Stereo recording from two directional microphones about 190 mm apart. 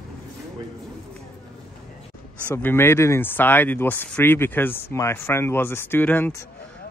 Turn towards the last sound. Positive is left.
turn(degrees=10)  # may be behind; listen again after turning